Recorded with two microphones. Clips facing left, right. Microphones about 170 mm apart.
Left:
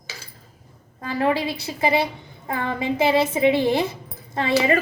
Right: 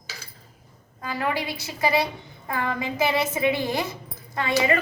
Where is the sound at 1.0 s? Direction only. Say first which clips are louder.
Left 5 dB; 30° left (ahead or behind).